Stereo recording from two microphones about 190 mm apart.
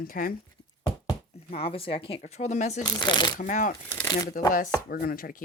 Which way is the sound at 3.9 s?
25° left (ahead or behind).